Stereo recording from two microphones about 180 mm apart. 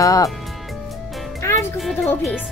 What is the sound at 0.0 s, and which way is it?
Music, 20° left (ahead or behind).